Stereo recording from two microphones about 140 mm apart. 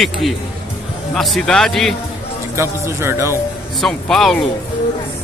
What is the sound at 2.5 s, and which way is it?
Speech, 20° right (ahead or behind).